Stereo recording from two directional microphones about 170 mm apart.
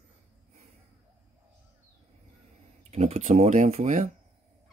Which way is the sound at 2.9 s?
40° right (ahead or behind).